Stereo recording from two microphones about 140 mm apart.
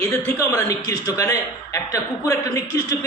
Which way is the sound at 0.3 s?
25° left (ahead or behind).